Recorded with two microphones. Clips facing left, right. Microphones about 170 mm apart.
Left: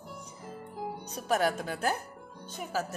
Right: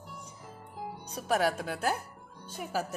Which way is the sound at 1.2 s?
5° right (ahead or behind).